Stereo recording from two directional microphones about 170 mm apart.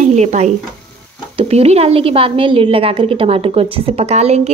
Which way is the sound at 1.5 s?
35° right (ahead or behind).